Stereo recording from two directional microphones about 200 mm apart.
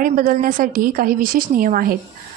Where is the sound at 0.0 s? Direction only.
45° right (ahead or behind).